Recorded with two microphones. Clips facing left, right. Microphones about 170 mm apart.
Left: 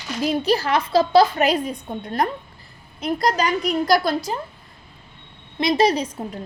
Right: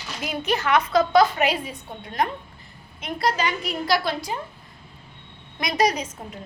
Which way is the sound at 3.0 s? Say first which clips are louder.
Left 4 dB; 40° left (ahead or behind).